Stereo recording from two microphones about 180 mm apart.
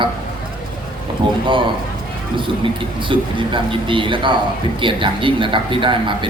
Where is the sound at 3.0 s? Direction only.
25° right (ahead or behind).